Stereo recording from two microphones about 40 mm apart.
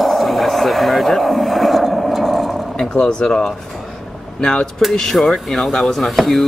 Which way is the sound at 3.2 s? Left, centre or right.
Left.